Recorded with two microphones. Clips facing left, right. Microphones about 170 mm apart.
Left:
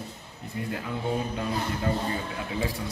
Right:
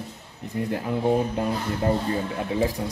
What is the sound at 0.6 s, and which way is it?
Speech, 40° right (ahead or behind).